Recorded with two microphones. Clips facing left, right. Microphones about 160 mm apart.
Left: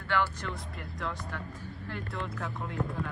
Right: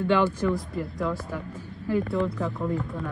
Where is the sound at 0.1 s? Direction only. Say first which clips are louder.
Right 7 dB; 15° right (ahead or behind).